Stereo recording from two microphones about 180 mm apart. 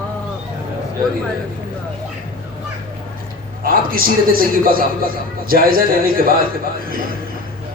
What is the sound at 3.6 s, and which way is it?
A man's voice, 55° right (ahead or behind).